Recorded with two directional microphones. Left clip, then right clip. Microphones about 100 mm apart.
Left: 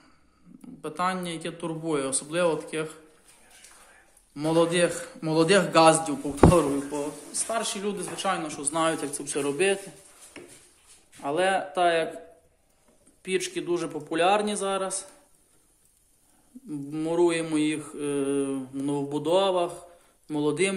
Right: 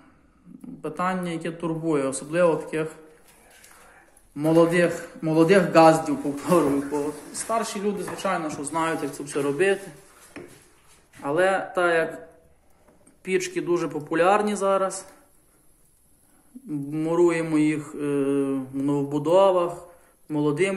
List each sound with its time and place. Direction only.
0.8 s a man's voice: 10° left (ahead or behind)
4.4 s a man's voice: 10° left (ahead or behind)
6.5 s speech: 40° left (ahead or behind)
7.5 s a man's voice: 20° left (ahead or behind)
11.1 s speech: 10° left (ahead or behind)
13.2 s speech: centre (ahead or behind)
16.6 s a man's voice: centre (ahead or behind); by 18.7 s 20° left (ahead or behind)
18.8 s speech: 5° left (ahead or behind)
20.2 s a man's voice: 20° left (ahead or behind)